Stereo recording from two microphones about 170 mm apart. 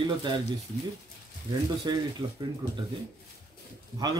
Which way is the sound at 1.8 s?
25° right (ahead or behind).